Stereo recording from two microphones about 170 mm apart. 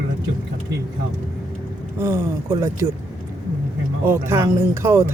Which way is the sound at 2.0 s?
15° right (ahead or behind).